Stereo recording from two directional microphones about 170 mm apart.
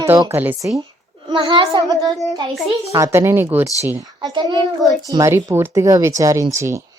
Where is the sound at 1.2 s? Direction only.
30° right (ahead or behind).